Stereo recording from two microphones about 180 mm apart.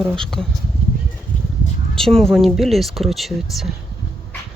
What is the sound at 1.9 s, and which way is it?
Speech, 5° left (ahead or behind).